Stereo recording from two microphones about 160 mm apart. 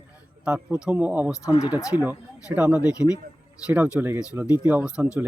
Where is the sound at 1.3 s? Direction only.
20° left (ahead or behind).